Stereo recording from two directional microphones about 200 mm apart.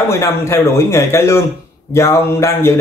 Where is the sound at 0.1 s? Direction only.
15° left (ahead or behind).